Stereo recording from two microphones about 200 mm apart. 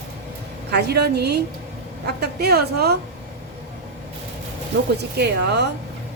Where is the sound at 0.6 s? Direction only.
55° right (ahead or behind).